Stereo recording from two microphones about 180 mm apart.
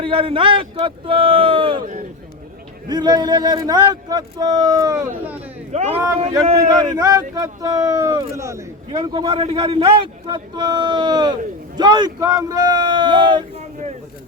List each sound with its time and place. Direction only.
0.0 s speech: 30° right (ahead or behind)
1.8 s speech: 45° right (ahead or behind)
2.9 s speech: 25° right (ahead or behind)
5.7 s a man's voice: 35° right (ahead or behind)
6.9 s speech: 20° right (ahead or behind)